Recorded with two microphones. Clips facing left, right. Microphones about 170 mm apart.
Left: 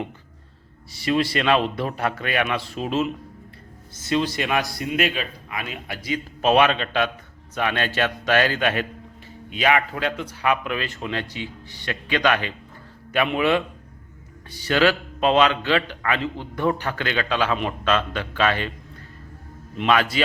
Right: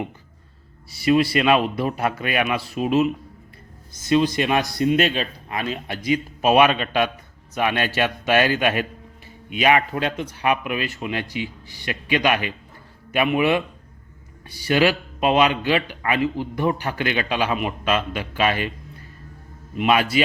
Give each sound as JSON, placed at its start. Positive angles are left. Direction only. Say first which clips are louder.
{"t": 0.9, "sound": "a man's voice", "louder": "right 4 dB", "side_deg": -10}
{"t": 4.1, "sound": "a man's voice", "louder": "right 4 dB", "side_deg": -20}
{"t": 6.0, "sound": "a man's voice", "louder": "right 4 dB", "side_deg": -15}
{"t": 19.7, "sound": "a man's voice", "louder": "right 2 dB", "side_deg": -10}